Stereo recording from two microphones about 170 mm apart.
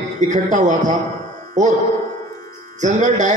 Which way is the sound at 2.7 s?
45° right (ahead or behind).